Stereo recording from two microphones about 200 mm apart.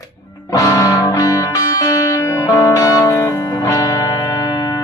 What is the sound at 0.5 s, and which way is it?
Music, 15° left (ahead or behind).